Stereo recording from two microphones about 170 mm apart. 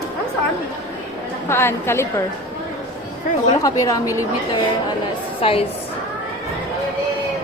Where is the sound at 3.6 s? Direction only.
20° left (ahead or behind).